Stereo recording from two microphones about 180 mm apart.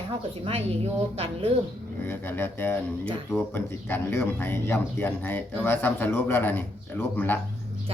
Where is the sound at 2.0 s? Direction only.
10° left (ahead or behind).